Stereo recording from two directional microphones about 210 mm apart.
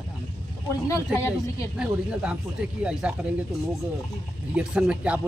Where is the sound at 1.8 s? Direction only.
5° right (ahead or behind).